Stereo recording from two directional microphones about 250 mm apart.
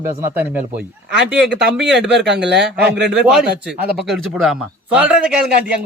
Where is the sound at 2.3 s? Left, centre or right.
Right.